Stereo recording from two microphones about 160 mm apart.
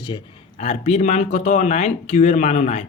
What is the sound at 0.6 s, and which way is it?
Speech, 45° left (ahead or behind).